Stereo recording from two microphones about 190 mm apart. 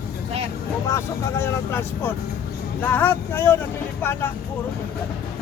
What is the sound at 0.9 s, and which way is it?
Speech, 15° left (ahead or behind).